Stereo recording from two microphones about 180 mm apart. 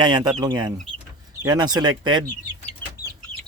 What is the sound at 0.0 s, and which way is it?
Speech, 25° right (ahead or behind).